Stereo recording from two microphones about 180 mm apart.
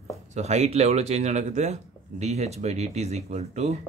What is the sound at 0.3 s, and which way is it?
Speech, 40° right (ahead or behind).